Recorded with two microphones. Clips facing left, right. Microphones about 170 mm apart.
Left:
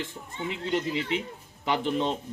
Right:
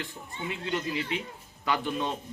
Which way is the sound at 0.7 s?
20° left (ahead or behind).